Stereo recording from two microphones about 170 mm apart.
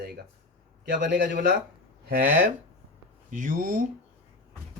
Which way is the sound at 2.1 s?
50° right (ahead or behind).